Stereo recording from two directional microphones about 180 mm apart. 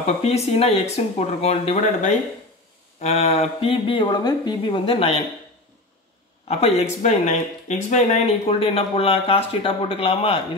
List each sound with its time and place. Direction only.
0.0 s speech: 35° left (ahead or behind)
6.4 s speech: 35° left (ahead or behind)